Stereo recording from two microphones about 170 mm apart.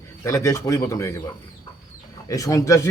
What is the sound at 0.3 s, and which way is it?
Speech, 20° left (ahead or behind).